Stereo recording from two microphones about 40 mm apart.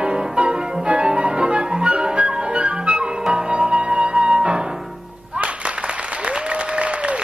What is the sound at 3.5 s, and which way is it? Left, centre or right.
Music, right.